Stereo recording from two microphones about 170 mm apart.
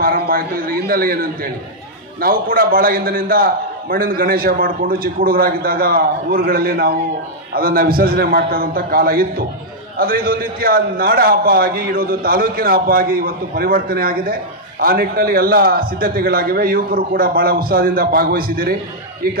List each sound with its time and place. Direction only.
0.0 s a man's voice: 60° right (ahead or behind)